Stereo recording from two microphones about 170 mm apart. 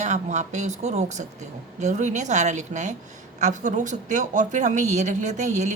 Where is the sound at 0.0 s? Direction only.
45° right (ahead or behind).